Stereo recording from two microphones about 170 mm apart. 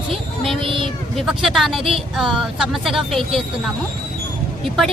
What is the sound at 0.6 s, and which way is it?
Speech, 30° right (ahead or behind).